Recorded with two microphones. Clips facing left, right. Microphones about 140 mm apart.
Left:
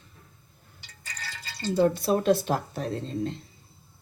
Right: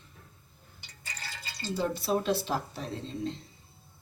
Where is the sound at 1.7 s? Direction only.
50° left (ahead or behind).